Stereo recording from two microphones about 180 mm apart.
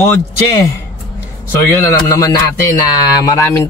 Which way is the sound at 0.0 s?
15° left (ahead or behind).